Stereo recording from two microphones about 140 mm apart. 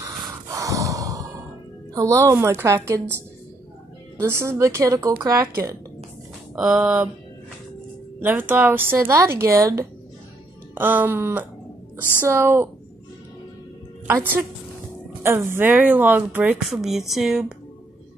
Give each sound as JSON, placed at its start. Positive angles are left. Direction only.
{"t": 0.0, "sound": "gasp", "side_deg": -25}
{"t": 2.0, "sound": "a woman's voice", "side_deg": -20}
{"t": 4.2, "sound": "a woman's voice", "side_deg": -20}
{"t": 6.5, "sound": "speech", "side_deg": -5}
{"t": 8.2, "sound": "a woman's voice", "side_deg": -15}
{"t": 14.0, "sound": "speech", "side_deg": -15}